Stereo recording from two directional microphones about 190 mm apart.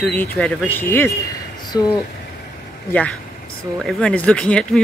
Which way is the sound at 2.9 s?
10° left (ahead or behind).